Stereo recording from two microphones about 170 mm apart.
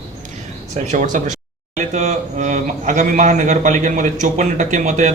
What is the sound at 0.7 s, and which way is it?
A man's voice, 45° right (ahead or behind).